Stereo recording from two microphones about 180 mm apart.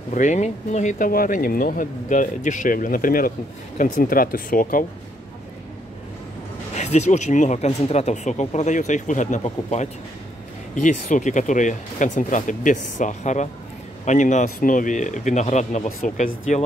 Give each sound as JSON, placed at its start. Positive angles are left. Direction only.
{"t": 0.1, "sound": "speech", "side_deg": 40}
{"t": 6.7, "sound": "speech", "side_deg": 40}